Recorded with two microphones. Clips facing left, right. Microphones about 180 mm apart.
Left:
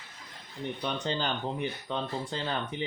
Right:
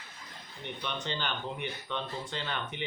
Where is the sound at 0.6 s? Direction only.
40° left (ahead or behind).